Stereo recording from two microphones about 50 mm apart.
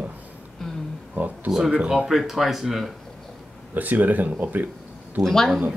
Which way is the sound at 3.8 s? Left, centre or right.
Right.